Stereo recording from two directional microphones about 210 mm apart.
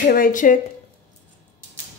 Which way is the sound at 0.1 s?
40° left (ahead or behind).